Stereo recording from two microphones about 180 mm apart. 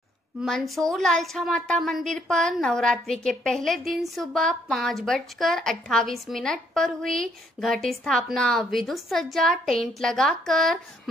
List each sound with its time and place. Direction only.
0.4 s speech: centre (ahead or behind)